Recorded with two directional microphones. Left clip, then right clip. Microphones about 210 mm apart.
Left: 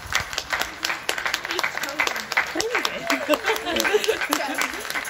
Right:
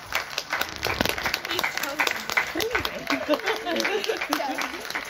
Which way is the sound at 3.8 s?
25° left (ahead or behind).